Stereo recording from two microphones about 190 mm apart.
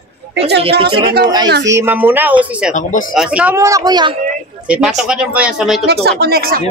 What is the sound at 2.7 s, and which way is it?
Speech, 40° left (ahead or behind).